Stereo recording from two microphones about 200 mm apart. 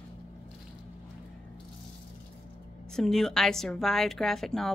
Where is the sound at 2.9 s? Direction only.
Centre (ahead or behind).